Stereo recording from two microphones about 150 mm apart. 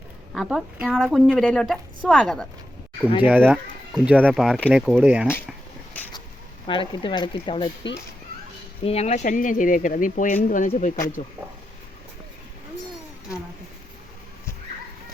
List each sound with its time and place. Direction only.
0.3 s a woman's voice: 5° right (ahead or behind)
3.2 s a woman's voice: 10° right (ahead or behind)
6.0 s a sound: 10° left (ahead or behind)
6.7 s speech: 35° left (ahead or behind)
8.8 s speech: 45° left (ahead or behind)